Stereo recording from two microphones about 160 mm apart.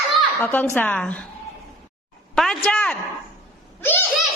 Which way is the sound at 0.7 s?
10° left (ahead or behind).